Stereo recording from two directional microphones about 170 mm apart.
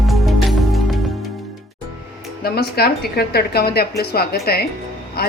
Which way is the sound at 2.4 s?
65° left (ahead or behind).